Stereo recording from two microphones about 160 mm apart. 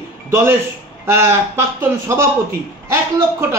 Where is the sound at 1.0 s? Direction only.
15° right (ahead or behind).